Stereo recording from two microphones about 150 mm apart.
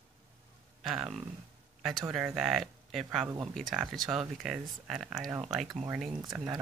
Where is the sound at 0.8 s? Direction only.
5° right (ahead or behind).